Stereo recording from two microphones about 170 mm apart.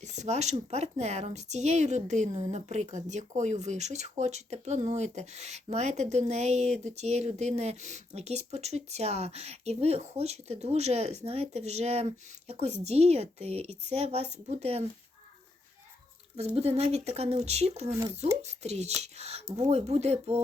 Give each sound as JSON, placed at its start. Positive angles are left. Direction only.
{"t": 0.0, "sound": "speech", "side_deg": -45}
{"t": 16.6, "sound": "speech", "side_deg": -40}